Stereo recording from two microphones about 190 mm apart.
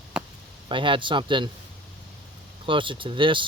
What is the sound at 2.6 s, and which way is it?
Speech, 25° right (ahead or behind).